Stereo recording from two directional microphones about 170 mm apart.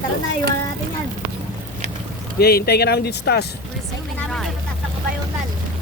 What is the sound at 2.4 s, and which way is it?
Speech, 65° left (ahead or behind).